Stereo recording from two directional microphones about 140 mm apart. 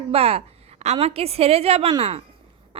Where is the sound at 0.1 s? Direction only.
45° right (ahead or behind).